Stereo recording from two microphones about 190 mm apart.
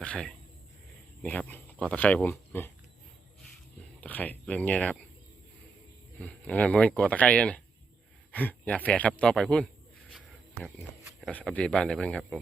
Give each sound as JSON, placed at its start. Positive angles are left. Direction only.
{"t": 0.0, "sound": "a sound", "side_deg": 5}
{"t": 1.2, "sound": "speech", "side_deg": 10}
{"t": 4.0, "sound": "speech", "side_deg": 10}
{"t": 6.1, "sound": "speech", "side_deg": 5}
{"t": 11.2, "sound": "speech", "side_deg": 5}